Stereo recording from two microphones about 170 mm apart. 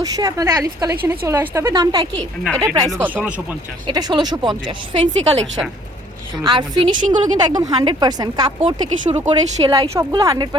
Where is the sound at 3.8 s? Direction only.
25° right (ahead or behind).